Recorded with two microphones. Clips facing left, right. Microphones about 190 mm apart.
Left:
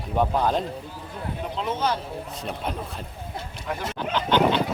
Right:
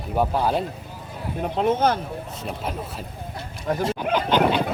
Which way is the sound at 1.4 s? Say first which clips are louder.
Right 7 dB; 50° right (ahead or behind).